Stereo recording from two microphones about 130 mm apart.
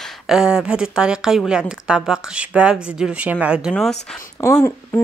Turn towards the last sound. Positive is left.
turn(degrees=20)  # may be behind; listen again after turning